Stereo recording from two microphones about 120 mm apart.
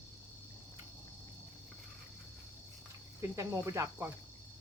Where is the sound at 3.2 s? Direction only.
25° right (ahead or behind).